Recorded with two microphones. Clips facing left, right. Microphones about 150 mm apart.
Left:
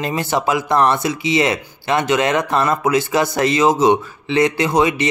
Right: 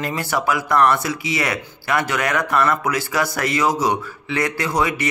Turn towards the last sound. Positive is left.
turn(degrees=20)  # may be behind; listen again after turning